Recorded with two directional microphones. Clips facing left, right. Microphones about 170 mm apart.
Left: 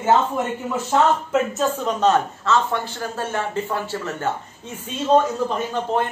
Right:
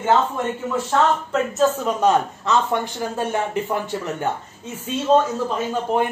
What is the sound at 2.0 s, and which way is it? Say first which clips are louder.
A man's voice: left 1 dB; 15° right (ahead or behind).